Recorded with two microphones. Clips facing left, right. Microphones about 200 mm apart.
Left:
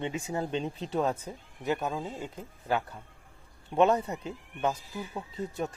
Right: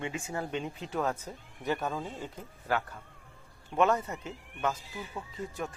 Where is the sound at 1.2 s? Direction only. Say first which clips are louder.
Left 2 dB; 15° left (ahead or behind).